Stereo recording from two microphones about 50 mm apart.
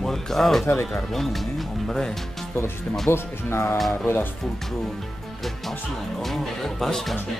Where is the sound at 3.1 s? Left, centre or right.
Left.